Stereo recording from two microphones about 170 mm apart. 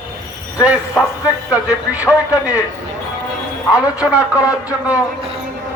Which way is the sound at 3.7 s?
5° right (ahead or behind).